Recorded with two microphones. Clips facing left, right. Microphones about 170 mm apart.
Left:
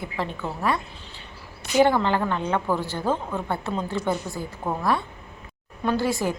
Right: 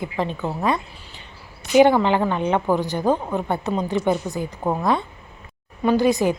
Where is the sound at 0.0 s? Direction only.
20° right (ahead or behind).